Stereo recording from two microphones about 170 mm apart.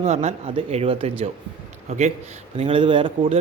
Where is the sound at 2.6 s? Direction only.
30° right (ahead or behind).